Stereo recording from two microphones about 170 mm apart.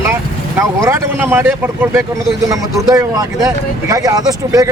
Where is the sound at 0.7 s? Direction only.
15° right (ahead or behind).